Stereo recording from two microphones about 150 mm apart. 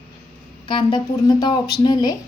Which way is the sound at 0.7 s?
30° left (ahead or behind).